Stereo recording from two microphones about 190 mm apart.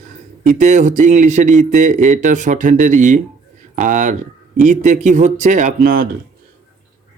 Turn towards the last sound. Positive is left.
turn(degrees=-50)  # may be behind; listen again after turning